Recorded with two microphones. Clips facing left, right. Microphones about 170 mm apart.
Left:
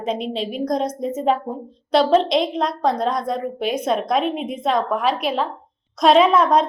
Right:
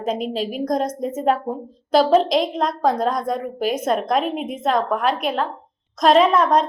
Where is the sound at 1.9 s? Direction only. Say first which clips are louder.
Right 1 dB; 5° right (ahead or behind).